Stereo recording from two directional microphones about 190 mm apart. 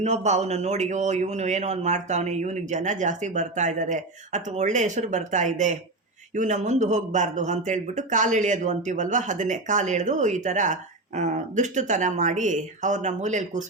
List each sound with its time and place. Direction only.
0.0 s a man's voice: 35° right (ahead or behind)